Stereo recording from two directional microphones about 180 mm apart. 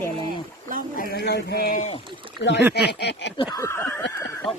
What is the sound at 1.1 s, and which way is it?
Speech, 65° left (ahead or behind).